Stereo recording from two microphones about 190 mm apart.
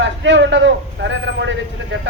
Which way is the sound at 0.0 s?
70° right (ahead or behind).